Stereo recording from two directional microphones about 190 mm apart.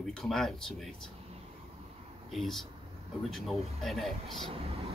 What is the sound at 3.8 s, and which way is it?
Speech, centre (ahead or behind).